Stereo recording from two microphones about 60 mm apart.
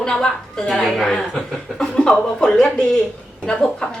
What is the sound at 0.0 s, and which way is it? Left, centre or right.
A woman's voice, centre.